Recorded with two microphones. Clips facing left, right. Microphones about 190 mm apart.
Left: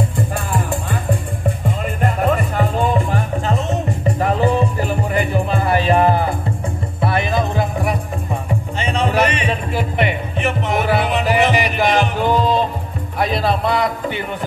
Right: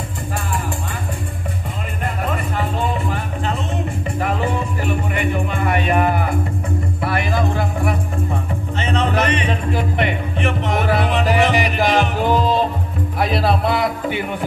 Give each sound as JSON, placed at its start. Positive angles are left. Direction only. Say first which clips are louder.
{"t": 2.0, "sound": "music", "louder": "left 5 dB", "side_deg": 45}